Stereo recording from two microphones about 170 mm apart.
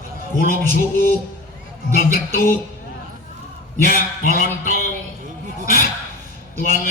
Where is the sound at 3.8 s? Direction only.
55° left (ahead or behind).